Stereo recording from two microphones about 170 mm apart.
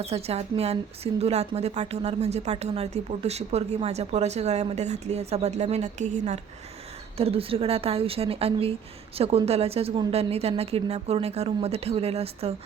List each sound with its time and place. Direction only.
0.0 s a woman's voice: 35° right (ahead or behind)